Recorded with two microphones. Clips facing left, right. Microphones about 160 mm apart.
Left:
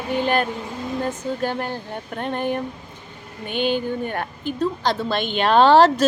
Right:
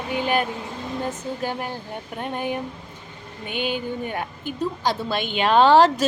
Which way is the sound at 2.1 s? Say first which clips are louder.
Left 3 dB; 10° right (ahead or behind).